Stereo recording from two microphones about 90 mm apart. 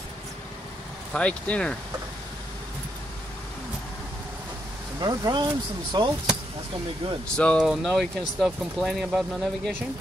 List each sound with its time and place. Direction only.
1.1 s speech: 10° left (ahead or behind)
5.0 s speech: 50° right (ahead or behind)
7.3 s speech: 10° left (ahead or behind)
7.8 s speech: centre (ahead or behind)